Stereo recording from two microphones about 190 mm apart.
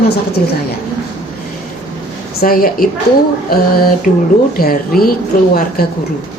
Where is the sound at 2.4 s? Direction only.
50° left (ahead or behind).